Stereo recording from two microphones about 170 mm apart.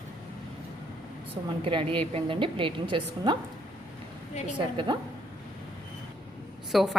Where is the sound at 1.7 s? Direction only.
30° right (ahead or behind).